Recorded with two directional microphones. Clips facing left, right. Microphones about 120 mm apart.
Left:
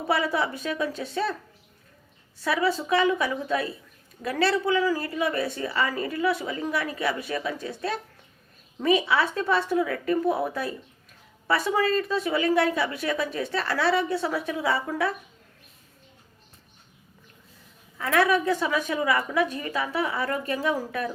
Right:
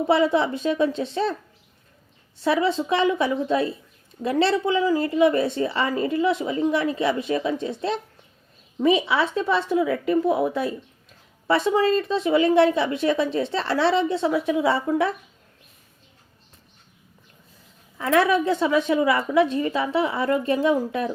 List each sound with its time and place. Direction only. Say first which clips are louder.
0.1 s a woman's voice: right 5 dB; 25° right (ahead or behind)
2.4 s a woman's voice: right 4 dB; 25° right (ahead or behind)
17.9 s a woman's voice: right 3 dB; 25° right (ahead or behind)